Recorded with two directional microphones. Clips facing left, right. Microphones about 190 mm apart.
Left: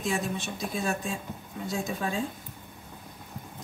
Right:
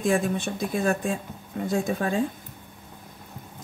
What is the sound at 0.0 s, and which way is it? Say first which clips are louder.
Speech: right 7 dB; 55° right (ahead or behind).